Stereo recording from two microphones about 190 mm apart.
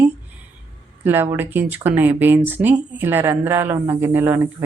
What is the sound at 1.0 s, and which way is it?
Speech, 10° right (ahead or behind).